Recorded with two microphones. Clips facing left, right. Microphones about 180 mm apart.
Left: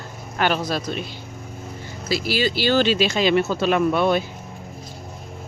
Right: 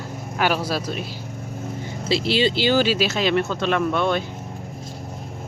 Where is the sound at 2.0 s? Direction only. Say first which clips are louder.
Right 2 dB; 25° right (ahead or behind).